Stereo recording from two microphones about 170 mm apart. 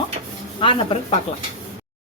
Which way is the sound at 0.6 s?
30° left (ahead or behind).